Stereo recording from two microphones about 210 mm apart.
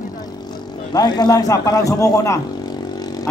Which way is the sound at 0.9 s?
20° left (ahead or behind).